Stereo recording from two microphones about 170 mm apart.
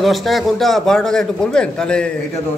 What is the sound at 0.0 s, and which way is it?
A man's voice, centre (ahead or behind).